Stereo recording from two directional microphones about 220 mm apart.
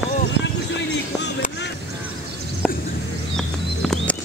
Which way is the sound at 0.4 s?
50° left (ahead or behind).